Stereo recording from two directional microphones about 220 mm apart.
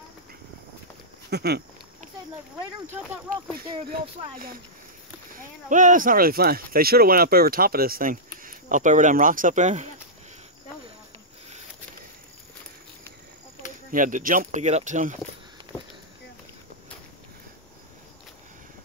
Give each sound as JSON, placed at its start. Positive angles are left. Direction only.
{"t": 1.3, "sound": "a sound", "side_deg": -50}
{"t": 3.6, "sound": "speech", "side_deg": -25}
{"t": 5.7, "sound": "speech", "side_deg": -35}
{"t": 13.9, "sound": "speech", "side_deg": -35}